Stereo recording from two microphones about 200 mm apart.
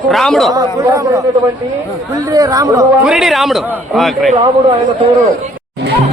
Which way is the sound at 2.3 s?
15° right (ahead or behind).